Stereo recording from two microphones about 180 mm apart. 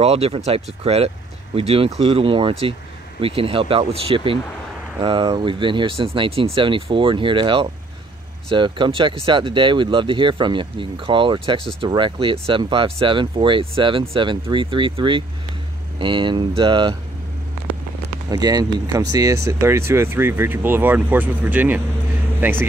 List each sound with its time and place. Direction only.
0.0 s speech: 35° right (ahead or behind)
18.3 s speech: 20° right (ahead or behind)